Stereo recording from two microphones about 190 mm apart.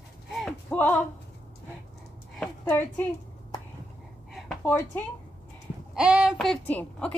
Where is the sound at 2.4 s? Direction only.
10° left (ahead or behind).